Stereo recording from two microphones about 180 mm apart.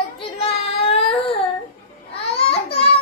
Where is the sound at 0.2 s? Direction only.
30° left (ahead or behind).